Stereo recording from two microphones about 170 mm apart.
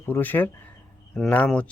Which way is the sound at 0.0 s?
10° left (ahead or behind).